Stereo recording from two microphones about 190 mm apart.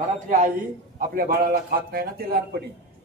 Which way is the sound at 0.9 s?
50° right (ahead or behind).